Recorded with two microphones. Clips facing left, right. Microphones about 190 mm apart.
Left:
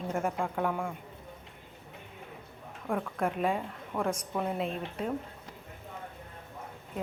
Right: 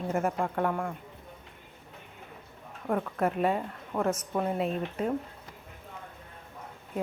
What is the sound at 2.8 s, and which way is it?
A woman's voice, 5° right (ahead or behind).